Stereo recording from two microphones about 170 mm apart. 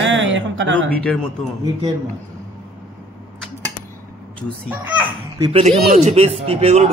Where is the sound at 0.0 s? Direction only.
90° right.